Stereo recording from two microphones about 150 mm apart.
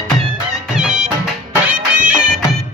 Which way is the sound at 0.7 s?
5° right (ahead or behind).